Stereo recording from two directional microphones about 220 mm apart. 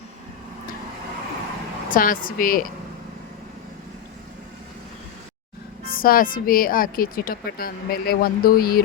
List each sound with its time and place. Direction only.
1.9 s a woman's voice: 40° left (ahead or behind)
5.8 s a woman's voice: 40° left (ahead or behind)